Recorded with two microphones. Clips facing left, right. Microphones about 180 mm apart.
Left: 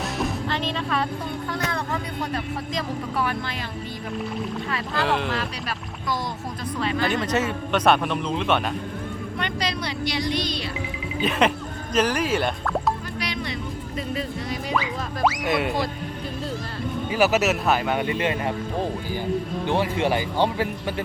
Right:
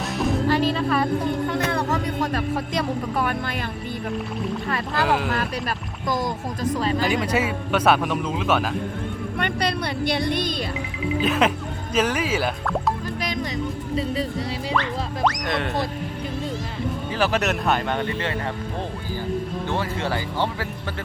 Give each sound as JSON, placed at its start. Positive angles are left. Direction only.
{"t": 0.2, "sound": "music", "side_deg": -5}
{"t": 1.5, "sound": "music", "side_deg": -25}
{"t": 3.2, "sound": "speech", "side_deg": -50}
{"t": 5.0, "sound": "a man's voice", "side_deg": -5}
{"t": 5.3, "sound": "speech", "side_deg": -50}
{"t": 6.7, "sound": "speech", "side_deg": -40}
{"t": 7.0, "sound": "a man's voice", "side_deg": -10}
{"t": 9.4, "sound": "a woman's voice", "side_deg": -55}
{"t": 11.2, "sound": "a man's voice", "side_deg": 0}
{"t": 14.8, "sound": "speech", "side_deg": 5}
{"t": 17.1, "sound": "speech", "side_deg": 10}
{"t": 19.6, "sound": "speech", "side_deg": 15}